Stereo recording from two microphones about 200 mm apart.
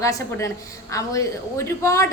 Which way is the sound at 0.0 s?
15° left (ahead or behind).